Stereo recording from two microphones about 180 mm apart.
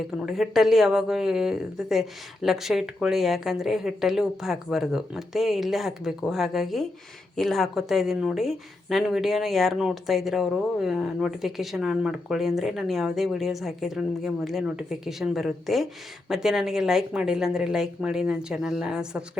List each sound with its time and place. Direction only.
0.3 s speech: centre (ahead or behind)